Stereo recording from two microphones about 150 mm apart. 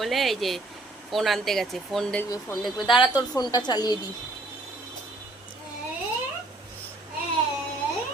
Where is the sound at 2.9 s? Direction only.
30° left (ahead or behind).